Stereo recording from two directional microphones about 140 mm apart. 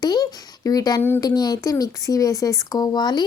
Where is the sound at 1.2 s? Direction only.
30° left (ahead or behind).